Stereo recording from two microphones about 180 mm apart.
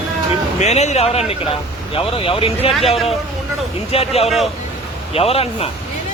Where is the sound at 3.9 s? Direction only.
35° left (ahead or behind).